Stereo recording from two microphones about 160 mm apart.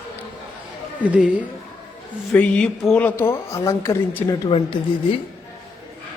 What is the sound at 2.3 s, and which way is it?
A woman's voice, 5° left (ahead or behind).